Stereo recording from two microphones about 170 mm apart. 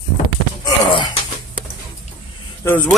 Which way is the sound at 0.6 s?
25° left (ahead or behind).